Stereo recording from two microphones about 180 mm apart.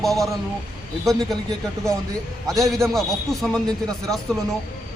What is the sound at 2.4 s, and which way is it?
Speech, centre (ahead or behind).